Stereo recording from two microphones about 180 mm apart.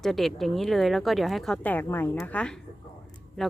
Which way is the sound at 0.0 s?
Centre (ahead or behind).